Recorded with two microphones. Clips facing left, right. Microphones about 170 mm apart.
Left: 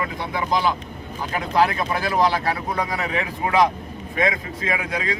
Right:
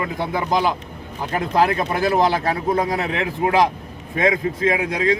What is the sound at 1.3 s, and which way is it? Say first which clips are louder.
Speech: right 2 dB; 45° right (ahead or behind).